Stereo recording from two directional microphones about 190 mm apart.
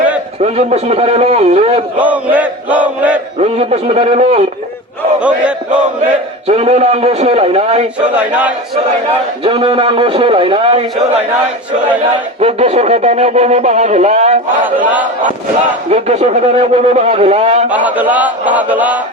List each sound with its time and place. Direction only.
0.4 s speech: 35° right (ahead or behind)
2.0 s a man's voice: 10° right (ahead or behind)
3.4 s speech: 35° right (ahead or behind)
6.5 s speech: 35° right (ahead or behind)
8.1 s a man's voice: 5° right (ahead or behind)
9.4 s a man's voice: 30° right (ahead or behind)
12.4 s speech: 30° right (ahead or behind)
14.8 s a man's voice: 10° right (ahead or behind)
15.9 s speech: 35° right (ahead or behind)
17.7 s a man's voice: 10° right (ahead or behind)